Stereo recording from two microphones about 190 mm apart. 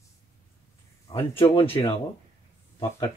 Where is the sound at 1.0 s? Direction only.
30° left (ahead or behind).